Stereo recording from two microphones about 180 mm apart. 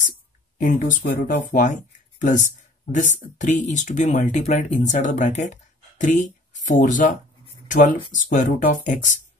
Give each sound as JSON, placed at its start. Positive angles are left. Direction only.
{"t": 0.6, "sound": "speech", "side_deg": 50}